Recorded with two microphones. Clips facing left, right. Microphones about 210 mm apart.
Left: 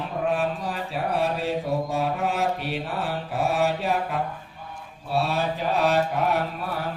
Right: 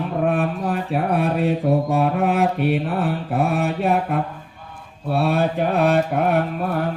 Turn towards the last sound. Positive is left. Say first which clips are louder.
# right 6 dB
turn(degrees=-55)  # may be behind; listen again after turning